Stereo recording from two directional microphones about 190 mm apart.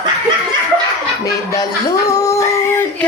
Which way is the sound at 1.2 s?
20° left (ahead or behind).